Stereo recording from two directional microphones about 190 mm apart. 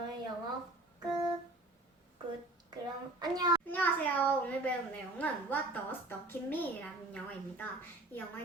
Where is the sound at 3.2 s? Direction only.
20° right (ahead or behind).